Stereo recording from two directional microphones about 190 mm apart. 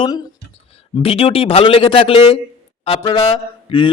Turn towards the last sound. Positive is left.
turn(degrees=25)  # may be behind; listen again after turning